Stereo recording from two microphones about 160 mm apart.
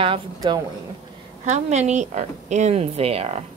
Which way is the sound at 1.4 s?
45° right (ahead or behind).